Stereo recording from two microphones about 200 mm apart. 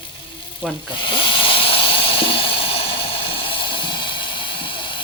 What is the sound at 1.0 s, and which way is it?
Hiss, 25° left (ahead or behind).